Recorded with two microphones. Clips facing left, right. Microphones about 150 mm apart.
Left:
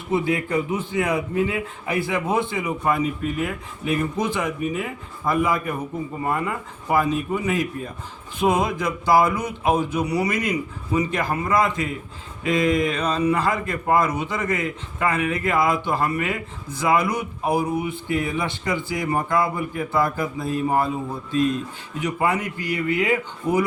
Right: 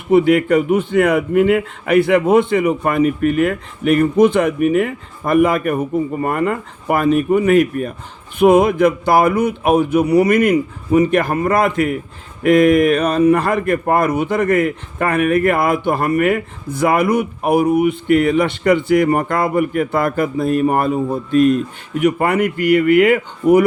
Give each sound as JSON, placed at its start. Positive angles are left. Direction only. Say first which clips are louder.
{"t": 0.1, "sound": "a man's voice", "louder": "right 10 dB", "side_deg": -70}